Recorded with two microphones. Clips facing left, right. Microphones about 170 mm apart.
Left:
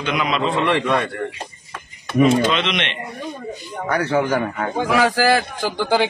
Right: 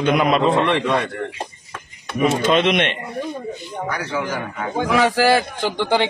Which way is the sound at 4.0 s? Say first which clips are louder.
Left 9 dB; 60° left (ahead or behind).